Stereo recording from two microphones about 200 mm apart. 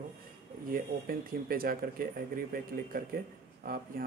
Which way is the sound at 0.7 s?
45° right (ahead or behind).